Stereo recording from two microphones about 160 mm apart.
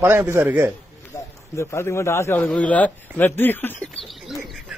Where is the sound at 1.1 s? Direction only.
15° left (ahead or behind).